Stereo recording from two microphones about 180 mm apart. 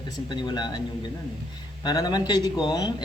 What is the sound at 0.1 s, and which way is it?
Speech, 25° left (ahead or behind).